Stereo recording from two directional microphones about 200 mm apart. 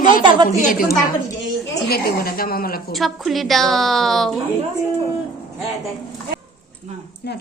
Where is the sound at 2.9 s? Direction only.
Centre (ahead or behind).